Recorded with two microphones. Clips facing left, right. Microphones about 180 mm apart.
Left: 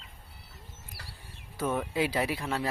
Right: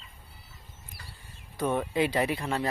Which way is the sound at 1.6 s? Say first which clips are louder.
Right 2 dB; centre (ahead or behind).